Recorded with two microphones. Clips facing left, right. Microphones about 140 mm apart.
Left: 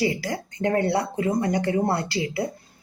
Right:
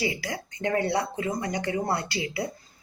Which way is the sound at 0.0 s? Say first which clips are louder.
Left 5 dB; 40° left (ahead or behind).